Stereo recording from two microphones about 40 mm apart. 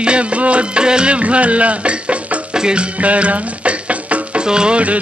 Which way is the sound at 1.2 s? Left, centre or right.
Right.